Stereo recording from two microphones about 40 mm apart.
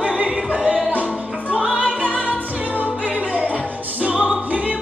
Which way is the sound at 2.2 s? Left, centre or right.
Right.